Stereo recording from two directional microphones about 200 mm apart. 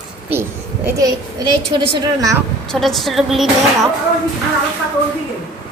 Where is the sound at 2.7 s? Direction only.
Centre (ahead or behind).